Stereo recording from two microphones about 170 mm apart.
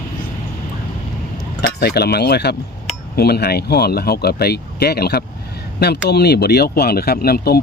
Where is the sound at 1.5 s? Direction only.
70° left (ahead or behind).